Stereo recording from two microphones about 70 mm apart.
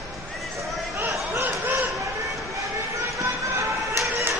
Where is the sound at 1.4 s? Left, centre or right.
Right.